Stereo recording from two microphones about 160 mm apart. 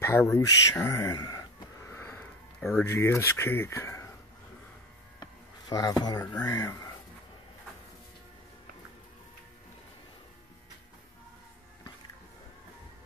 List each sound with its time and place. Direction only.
0.0 s speech: 15° left (ahead or behind)
1.9 s sniff: 15° left (ahead or behind)
2.8 s speech: 15° left (ahead or behind)
5.2 s speech: 25° left (ahead or behind)